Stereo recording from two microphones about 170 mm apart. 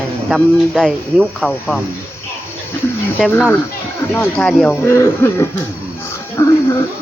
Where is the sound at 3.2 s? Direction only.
10° left (ahead or behind).